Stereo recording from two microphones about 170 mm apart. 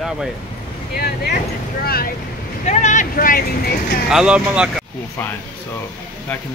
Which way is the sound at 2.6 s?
45° left (ahead or behind).